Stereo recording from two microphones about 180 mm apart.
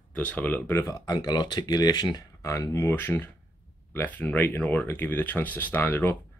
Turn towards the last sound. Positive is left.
turn(degrees=10)  # may be behind; listen again after turning